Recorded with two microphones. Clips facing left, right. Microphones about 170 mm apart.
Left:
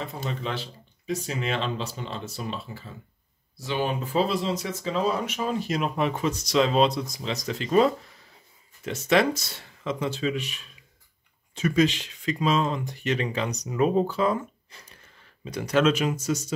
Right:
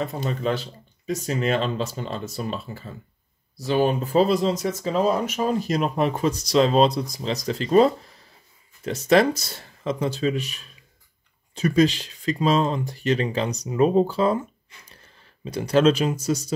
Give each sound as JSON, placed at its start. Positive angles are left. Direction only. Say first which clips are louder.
{"t": 0.0, "sound": "speech", "louder": "right 6 dB", "side_deg": -45}
{"t": 15.4, "sound": "speech", "louder": "right 4 dB", "side_deg": -30}